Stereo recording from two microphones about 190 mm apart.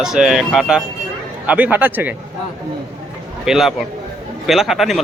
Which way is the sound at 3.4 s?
Centre (ahead or behind).